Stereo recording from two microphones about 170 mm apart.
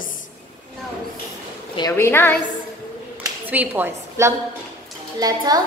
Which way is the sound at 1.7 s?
20° left (ahead or behind).